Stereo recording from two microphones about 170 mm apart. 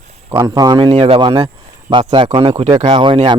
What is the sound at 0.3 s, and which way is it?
Speech, 25° right (ahead or behind).